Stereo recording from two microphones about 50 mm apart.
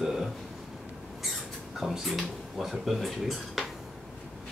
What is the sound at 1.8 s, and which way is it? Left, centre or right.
Speech, centre.